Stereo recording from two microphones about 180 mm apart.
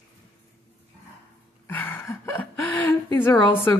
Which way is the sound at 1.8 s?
10° left (ahead or behind).